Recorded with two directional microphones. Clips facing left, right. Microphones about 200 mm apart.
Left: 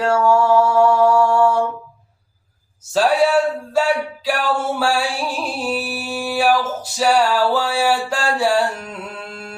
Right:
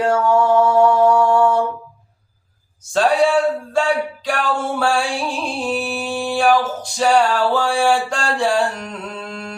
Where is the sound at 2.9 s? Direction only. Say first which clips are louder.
Even; 5° left (ahead or behind).